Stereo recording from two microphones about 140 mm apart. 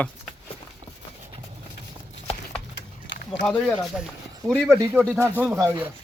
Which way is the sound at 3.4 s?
5° left (ahead or behind).